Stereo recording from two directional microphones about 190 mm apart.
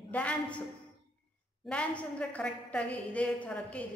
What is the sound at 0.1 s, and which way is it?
Speech, 5° left (ahead or behind).